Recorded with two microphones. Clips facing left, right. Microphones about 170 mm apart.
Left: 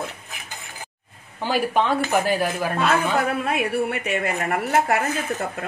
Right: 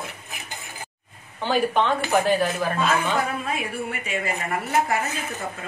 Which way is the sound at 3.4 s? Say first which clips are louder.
Left 6 dB; 65° left (ahead or behind).